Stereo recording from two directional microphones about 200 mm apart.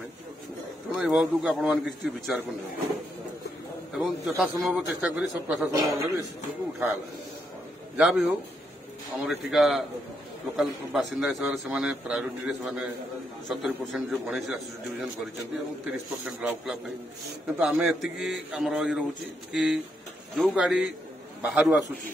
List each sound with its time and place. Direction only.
0.9 s a man's voice: centre (ahead or behind)
3.9 s a man's voice: centre (ahead or behind); by 6.2 s 15° right (ahead or behind)
8.0 s a man's voice: 5° right (ahead or behind)